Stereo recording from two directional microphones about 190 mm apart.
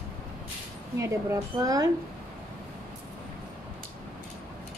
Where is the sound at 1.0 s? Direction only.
15° right (ahead or behind).